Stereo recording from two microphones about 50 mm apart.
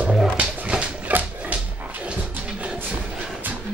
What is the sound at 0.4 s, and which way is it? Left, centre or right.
Dog, right.